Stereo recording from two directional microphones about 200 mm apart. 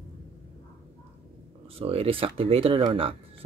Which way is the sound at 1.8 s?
30° right (ahead or behind).